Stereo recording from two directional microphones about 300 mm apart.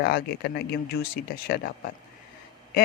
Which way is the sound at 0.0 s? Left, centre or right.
Left.